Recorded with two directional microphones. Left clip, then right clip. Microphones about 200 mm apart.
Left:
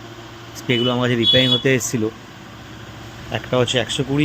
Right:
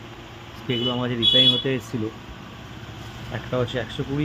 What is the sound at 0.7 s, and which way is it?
Speech, 20° left (ahead or behind).